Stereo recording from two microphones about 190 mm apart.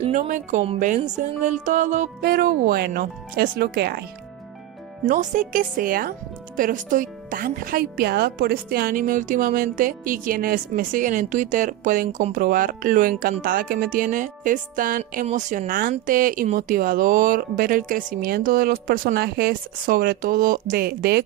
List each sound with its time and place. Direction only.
0.0 s speech: 40° right (ahead or behind); by 4.0 s 55° right (ahead or behind)
5.0 s speech: 40° right (ahead or behind)